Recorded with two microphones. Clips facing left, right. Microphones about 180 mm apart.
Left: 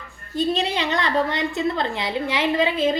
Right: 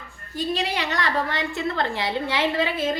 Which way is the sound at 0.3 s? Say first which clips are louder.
Left 4 dB; 20° left (ahead or behind).